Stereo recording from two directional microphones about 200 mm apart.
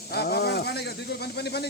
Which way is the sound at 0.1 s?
50° left (ahead or behind).